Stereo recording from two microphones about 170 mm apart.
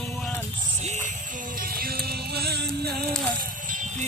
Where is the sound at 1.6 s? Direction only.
60° right (ahead or behind).